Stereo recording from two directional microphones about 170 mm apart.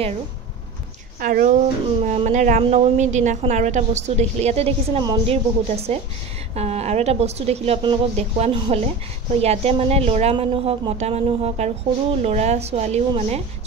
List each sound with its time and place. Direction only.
1.2 s a woman's voice: 55° right (ahead or behind)
2.0 s a woman's voice: 40° right (ahead or behind)